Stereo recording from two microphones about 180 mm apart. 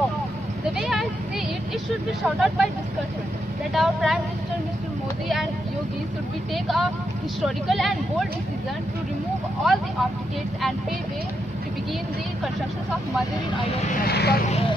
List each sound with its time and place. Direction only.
0.7 s speech: centre (ahead or behind)
2.2 s speech: centre (ahead or behind)
3.7 s speech: centre (ahead or behind)
6.5 s speech: centre (ahead or behind)
9.6 s speech: centre (ahead or behind)
14.0 s speech: 60° left (ahead or behind)